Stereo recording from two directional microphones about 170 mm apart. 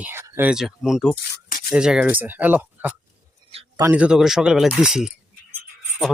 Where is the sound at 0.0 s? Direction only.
10° right (ahead or behind).